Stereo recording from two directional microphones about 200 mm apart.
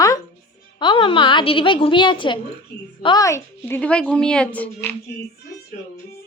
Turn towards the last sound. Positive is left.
turn(degrees=5)  # may be behind; listen again after turning